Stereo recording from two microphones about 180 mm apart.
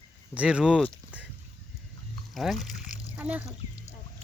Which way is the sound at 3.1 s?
10° right (ahead or behind).